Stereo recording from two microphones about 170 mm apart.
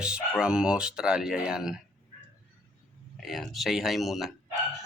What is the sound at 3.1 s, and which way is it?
Speech, centre (ahead or behind).